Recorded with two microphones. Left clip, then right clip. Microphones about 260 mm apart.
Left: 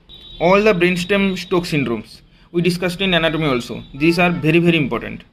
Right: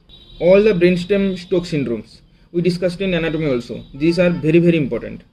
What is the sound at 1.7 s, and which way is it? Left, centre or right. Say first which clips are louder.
A man's voice: left 1 dB; left.